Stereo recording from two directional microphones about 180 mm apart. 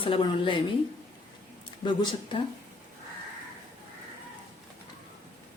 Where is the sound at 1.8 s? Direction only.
25° left (ahead or behind).